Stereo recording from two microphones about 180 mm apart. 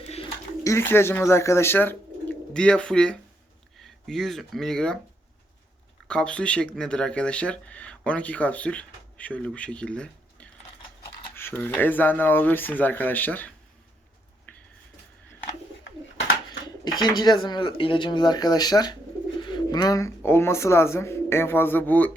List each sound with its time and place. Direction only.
0.6 s speech: 15° left (ahead or behind)
6.1 s speech: 5° left (ahead or behind)
14.5 s a sound: 10° left (ahead or behind)
17.0 s speech: 25° left (ahead or behind)